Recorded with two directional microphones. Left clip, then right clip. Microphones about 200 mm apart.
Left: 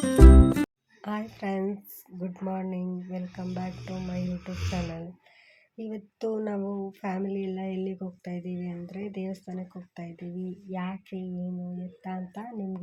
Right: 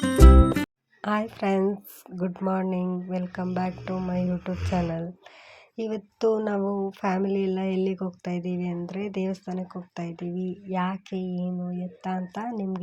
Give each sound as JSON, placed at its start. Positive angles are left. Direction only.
{"t": 0.0, "sound": "music", "side_deg": 0}
{"t": 1.0, "sound": "speech", "side_deg": -30}